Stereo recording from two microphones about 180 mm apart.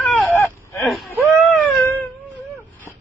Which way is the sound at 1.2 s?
10° left (ahead or behind).